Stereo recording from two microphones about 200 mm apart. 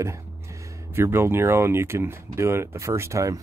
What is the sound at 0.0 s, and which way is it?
Speech, 15° right (ahead or behind).